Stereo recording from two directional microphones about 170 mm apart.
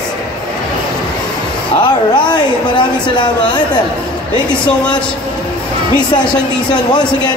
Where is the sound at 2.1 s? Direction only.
25° left (ahead or behind).